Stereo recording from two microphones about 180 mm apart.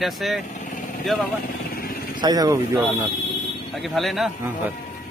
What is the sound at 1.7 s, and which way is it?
Vehicle, 55° left (ahead or behind).